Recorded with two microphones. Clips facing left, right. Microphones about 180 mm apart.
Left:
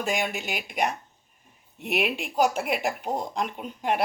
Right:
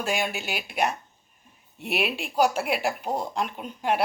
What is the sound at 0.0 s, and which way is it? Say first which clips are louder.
Speech: even; centre (ahead or behind).